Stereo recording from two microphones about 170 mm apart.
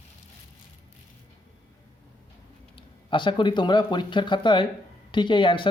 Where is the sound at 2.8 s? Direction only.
30° left (ahead or behind).